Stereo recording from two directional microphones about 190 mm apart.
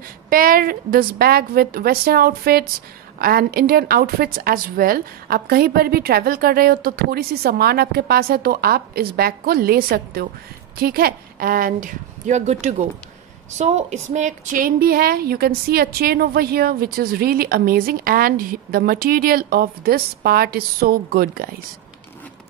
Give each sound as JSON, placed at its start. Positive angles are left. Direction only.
{"t": 0.3, "sound": "a woman's voice", "side_deg": -50}